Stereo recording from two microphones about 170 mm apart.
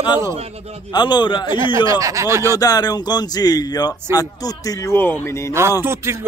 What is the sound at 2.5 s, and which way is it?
Speech, 20° left (ahead or behind).